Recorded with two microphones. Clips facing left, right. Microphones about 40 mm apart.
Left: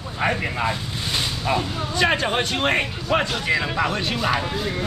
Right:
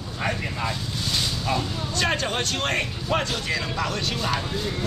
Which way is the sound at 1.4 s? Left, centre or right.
Left.